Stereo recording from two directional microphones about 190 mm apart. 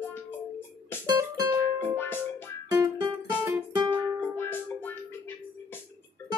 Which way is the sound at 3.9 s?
10° left (ahead or behind).